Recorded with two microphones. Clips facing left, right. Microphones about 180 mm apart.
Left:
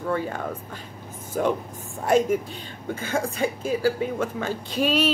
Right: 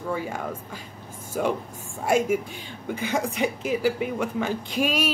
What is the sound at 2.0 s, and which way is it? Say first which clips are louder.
Speech: left 2 dB; 10° right (ahead or behind).